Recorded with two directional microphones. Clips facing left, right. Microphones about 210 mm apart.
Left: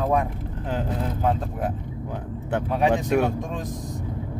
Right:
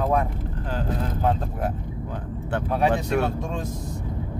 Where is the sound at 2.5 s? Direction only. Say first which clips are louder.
Left 1 dB; 15° left (ahead or behind).